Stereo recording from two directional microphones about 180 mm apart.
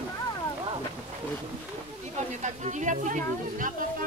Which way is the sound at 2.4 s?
40° right (ahead or behind).